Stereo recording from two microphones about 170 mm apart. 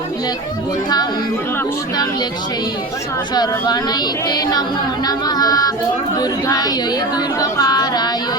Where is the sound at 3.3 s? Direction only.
25° left (ahead or behind).